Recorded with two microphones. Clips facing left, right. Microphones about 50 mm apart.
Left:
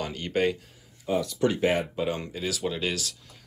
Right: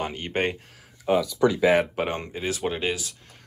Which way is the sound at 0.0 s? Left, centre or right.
Right.